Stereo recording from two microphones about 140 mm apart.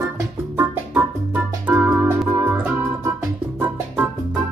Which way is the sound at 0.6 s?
10° right (ahead or behind).